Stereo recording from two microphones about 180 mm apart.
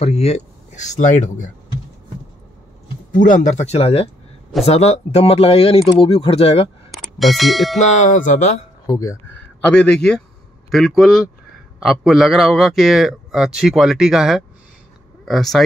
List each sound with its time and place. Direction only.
0.0 s speech: 35° left (ahead or behind)
3.2 s speech: 45° left (ahead or behind); by 6.7 s 30° left (ahead or behind)
6.9 s speech: centre (ahead or behind)
7.8 s speech: 40° left (ahead or behind)
8.8 s speech: 15° left (ahead or behind)
9.7 s a man's voice: 5° left (ahead or behind)